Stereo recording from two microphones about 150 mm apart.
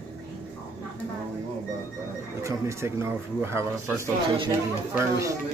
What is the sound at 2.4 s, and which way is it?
Speech, 20° right (ahead or behind).